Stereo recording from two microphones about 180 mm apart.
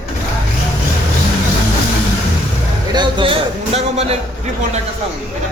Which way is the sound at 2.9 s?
25° right (ahead or behind).